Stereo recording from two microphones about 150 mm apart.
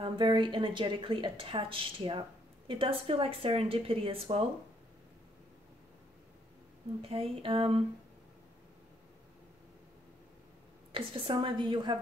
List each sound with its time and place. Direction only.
0.0 s speech: 35° right (ahead or behind)
7.0 s speech: 40° right (ahead or behind)
10.9 s speech: 35° right (ahead or behind)